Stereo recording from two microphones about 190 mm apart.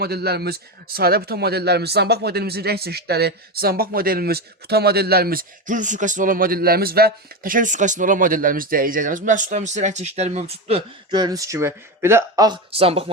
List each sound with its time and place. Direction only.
0.0 s speech: 55° right (ahead or behind); by 13.1 s 30° right (ahead or behind)